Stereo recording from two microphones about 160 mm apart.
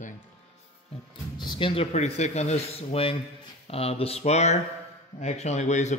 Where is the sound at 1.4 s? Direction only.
30° left (ahead or behind).